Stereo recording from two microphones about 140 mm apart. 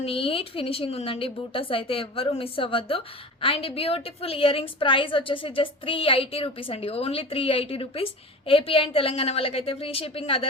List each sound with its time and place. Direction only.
0.0 s a woman's voice: 40° left (ahead or behind)